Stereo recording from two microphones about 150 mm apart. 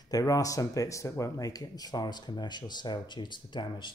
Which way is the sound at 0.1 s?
25° left (ahead or behind).